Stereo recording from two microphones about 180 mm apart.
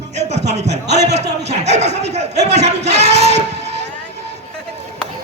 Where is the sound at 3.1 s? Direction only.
35° right (ahead or behind).